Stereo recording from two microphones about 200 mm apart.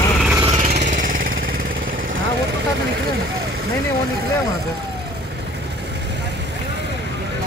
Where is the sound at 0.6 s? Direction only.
35° right (ahead or behind).